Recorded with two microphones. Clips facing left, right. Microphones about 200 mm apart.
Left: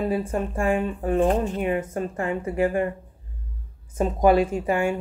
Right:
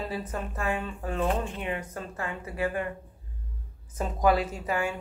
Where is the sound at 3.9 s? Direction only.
30° left (ahead or behind).